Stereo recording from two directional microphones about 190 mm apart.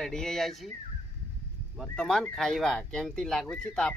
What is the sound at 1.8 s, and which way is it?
Speech, 5° left (ahead or behind).